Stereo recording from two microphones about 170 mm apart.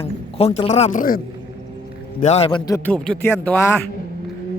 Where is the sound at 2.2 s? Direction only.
40° left (ahead or behind).